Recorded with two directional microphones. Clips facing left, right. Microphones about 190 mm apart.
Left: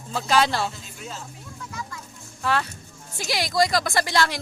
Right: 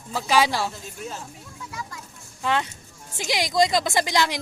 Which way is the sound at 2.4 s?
20° right (ahead or behind).